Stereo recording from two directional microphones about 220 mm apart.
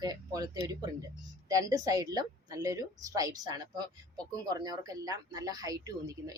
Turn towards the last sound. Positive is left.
turn(degrees=-15)  # may be behind; listen again after turning